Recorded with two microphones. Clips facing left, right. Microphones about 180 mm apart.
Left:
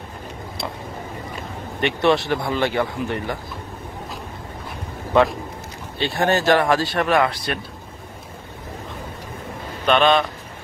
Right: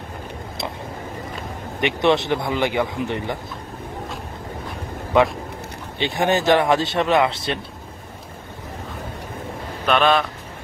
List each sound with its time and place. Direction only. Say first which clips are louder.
1.8 s speech: even; 20° right (ahead or behind)
5.9 s speech: even; 20° right (ahead or behind)
9.8 s speech: left 1 dB; 5° right (ahead or behind)